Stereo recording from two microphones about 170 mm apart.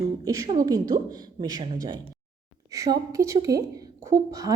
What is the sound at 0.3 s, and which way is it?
A woman's voice, 20° right (ahead or behind).